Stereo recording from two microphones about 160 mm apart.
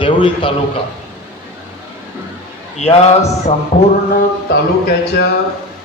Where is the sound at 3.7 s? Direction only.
50° left (ahead or behind).